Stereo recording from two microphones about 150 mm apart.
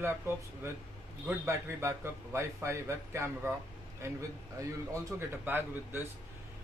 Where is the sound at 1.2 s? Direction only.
15° right (ahead or behind).